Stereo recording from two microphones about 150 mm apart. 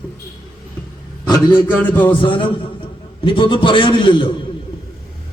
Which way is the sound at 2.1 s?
35° left (ahead or behind).